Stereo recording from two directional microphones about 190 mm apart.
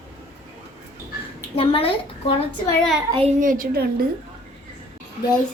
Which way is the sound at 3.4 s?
45° right (ahead or behind).